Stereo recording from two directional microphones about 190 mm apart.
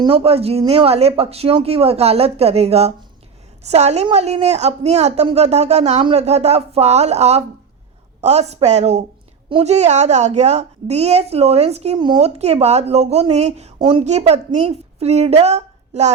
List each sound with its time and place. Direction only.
0.0 s a woman's voice: 30° right (ahead or behind)